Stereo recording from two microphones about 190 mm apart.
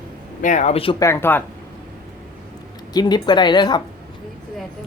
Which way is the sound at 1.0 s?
15° left (ahead or behind).